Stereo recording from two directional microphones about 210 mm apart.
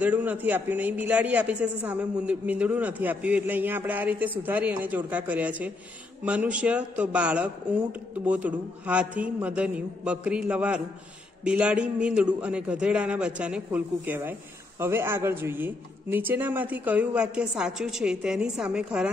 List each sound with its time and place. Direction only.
0.0 s a man's voice: 10° right (ahead or behind)